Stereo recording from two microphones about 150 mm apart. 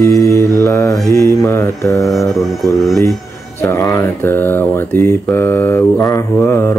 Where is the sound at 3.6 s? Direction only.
20° left (ahead or behind).